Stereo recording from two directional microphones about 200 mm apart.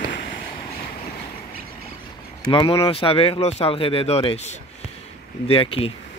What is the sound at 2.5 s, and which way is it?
Speech, 25° left (ahead or behind).